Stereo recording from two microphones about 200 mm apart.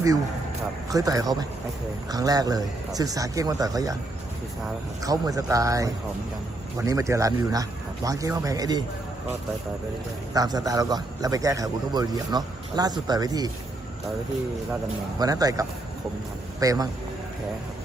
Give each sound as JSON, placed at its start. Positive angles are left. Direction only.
{"t": 0.9, "sound": "a man's voice", "side_deg": -15}
{"t": 5.0, "sound": "a man's voice", "side_deg": -20}
{"t": 10.3, "sound": "a man's voice", "side_deg": -20}
{"t": 15.2, "sound": "a man's voice", "side_deg": -20}